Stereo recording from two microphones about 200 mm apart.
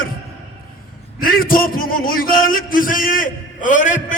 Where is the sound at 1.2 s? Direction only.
45° left (ahead or behind).